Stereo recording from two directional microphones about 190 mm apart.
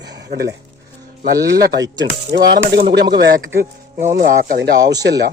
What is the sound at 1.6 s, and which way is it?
Speech, 65° right (ahead or behind).